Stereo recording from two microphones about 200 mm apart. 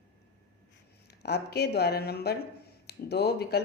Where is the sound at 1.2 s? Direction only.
55° left (ahead or behind).